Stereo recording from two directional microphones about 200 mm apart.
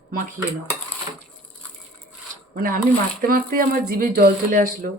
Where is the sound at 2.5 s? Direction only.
45° right (ahead or behind).